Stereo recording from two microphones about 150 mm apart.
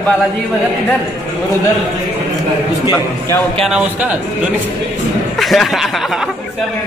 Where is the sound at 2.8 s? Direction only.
25° left (ahead or behind).